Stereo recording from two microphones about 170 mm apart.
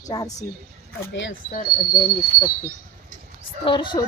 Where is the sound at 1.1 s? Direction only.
90° left.